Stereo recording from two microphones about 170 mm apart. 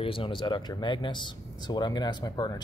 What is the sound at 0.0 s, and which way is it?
Speech, 30° left (ahead or behind).